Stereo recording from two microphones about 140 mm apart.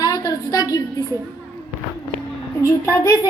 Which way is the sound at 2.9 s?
25° left (ahead or behind).